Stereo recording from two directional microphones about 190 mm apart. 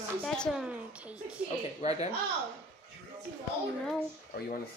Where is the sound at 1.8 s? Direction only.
35° left (ahead or behind).